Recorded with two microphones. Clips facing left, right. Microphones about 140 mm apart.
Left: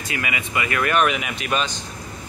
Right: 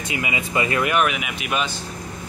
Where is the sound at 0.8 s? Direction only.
5° right (ahead or behind).